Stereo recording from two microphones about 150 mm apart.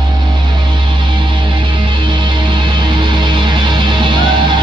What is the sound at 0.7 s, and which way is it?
Music, 30° right (ahead or behind).